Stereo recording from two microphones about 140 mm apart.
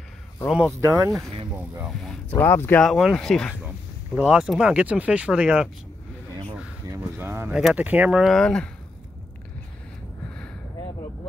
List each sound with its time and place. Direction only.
0.5 s speech: 5° right (ahead or behind)
0.7 s speech: 20° right (ahead or behind)
1.9 s speech: 5° left (ahead or behind)
2.3 s speech: 15° left (ahead or behind)
2.8 s speech: centre (ahead or behind)
3.6 s speech: 10° right (ahead or behind)
6.9 s speech: 15° right (ahead or behind); by 8.6 s 5° left (ahead or behind)